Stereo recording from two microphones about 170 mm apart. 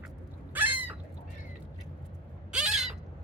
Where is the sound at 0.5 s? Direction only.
10° right (ahead or behind).